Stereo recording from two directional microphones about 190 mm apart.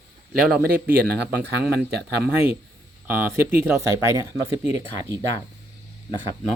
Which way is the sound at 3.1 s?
10° right (ahead or behind).